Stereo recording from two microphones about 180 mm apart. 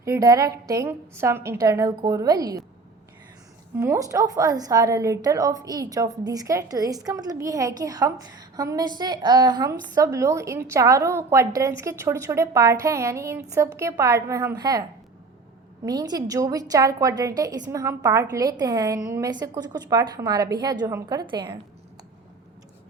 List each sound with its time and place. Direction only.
0.0 s a woman's voice: 15° right (ahead or behind)
3.8 s a woman's voice: 15° right (ahead or behind)